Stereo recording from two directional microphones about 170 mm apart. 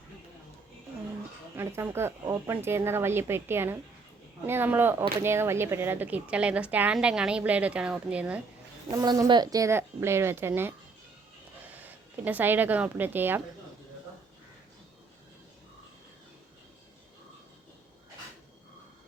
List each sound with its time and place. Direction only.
1.5 s a woman's voice: 15° right (ahead or behind)
8.9 s a woman's voice: 20° right (ahead or behind)
12.2 s a woman's voice: 10° right (ahead or behind)